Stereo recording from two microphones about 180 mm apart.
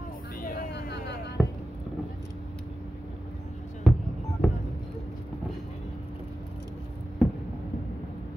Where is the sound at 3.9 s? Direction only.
Centre (ahead or behind).